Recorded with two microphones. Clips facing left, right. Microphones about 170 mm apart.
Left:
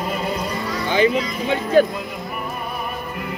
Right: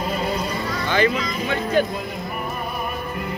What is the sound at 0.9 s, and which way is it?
Music, 15° left (ahead or behind).